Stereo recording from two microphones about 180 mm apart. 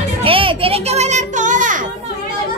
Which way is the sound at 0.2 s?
30° right (ahead or behind).